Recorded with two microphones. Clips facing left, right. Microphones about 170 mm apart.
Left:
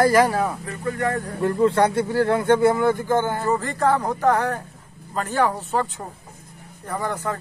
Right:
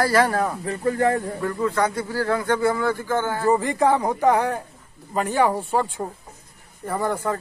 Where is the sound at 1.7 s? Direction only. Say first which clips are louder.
Left 4 dB; 30° left (ahead or behind).